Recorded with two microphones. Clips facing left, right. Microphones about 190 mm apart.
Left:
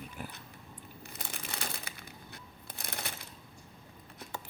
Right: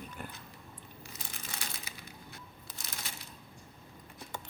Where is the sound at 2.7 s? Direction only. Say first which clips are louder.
Left 6 dB; 60° left (ahead or behind).